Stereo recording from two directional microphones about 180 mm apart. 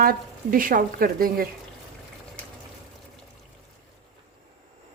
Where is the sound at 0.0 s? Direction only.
50° right (ahead or behind).